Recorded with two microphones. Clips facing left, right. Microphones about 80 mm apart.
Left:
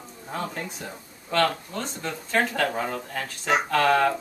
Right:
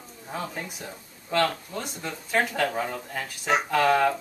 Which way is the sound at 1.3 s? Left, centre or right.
Centre.